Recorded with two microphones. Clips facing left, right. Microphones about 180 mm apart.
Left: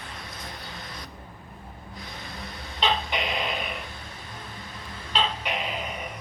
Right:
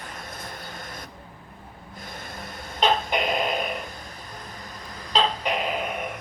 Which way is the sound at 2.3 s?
50° right (ahead or behind).